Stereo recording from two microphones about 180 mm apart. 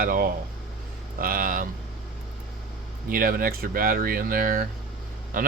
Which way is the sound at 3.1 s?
50° right (ahead or behind).